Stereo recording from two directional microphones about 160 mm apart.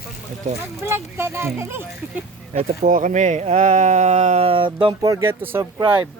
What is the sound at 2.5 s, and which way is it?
Speech, 50° right (ahead or behind).